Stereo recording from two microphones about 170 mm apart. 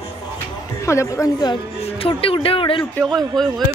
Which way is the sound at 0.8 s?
15° left (ahead or behind).